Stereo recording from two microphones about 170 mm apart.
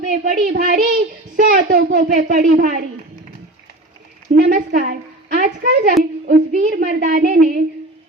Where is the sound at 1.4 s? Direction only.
65° right (ahead or behind).